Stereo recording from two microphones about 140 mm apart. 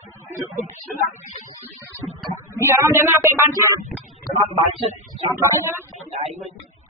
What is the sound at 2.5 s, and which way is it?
Speech, 20° right (ahead or behind).